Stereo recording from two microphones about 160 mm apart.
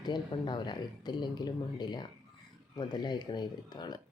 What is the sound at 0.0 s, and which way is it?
Speech, 30° left (ahead or behind).